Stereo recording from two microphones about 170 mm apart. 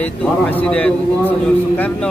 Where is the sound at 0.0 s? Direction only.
10° left (ahead or behind).